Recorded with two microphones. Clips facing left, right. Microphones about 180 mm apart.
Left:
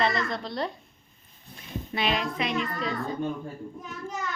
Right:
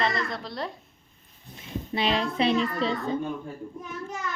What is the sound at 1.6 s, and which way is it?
A child's voice, 30° right (ahead or behind).